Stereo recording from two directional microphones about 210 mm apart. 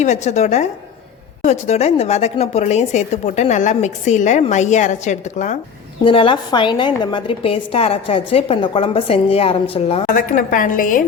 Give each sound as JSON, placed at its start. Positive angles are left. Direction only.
{"t": 0.0, "sound": "a woman's voice", "side_deg": 35}
{"t": 6.1, "sound": "a woman's voice", "side_deg": 25}
{"t": 10.2, "sound": "a woman's voice", "side_deg": 40}